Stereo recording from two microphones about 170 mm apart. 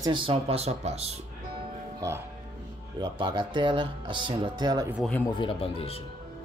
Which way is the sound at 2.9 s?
25° right (ahead or behind).